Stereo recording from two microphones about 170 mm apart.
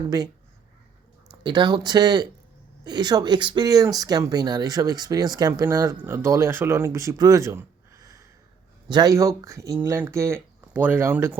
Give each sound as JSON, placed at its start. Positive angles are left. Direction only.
{"t": 1.3, "sound": "speech", "side_deg": -25}